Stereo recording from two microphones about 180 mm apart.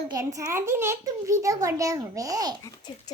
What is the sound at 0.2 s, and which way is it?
A child's voice, 15° right (ahead or behind).